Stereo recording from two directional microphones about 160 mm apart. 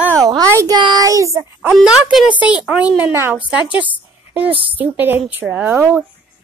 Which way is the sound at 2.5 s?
5° right (ahead or behind).